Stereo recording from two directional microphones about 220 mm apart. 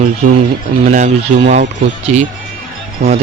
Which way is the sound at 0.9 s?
35° right (ahead or behind).